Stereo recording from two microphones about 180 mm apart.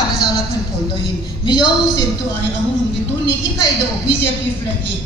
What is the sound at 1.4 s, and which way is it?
Speech, 25° left (ahead or behind).